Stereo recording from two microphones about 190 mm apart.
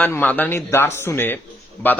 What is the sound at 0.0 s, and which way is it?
A man's voice, 10° left (ahead or behind).